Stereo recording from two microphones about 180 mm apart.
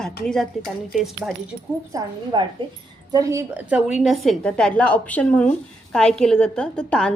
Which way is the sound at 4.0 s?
Centre (ahead or behind).